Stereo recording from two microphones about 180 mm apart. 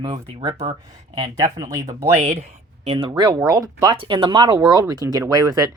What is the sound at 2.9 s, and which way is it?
Speech, 30° right (ahead or behind).